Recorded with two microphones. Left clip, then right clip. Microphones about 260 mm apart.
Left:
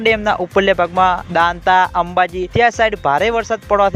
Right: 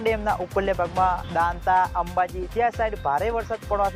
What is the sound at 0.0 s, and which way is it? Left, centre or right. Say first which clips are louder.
Speech: left 9 dB; left.